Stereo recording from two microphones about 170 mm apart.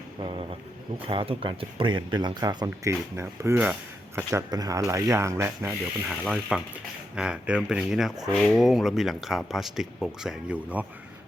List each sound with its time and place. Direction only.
0.2 s speech: 30° right (ahead or behind)
6.1 s speech: 5° right (ahead or behind)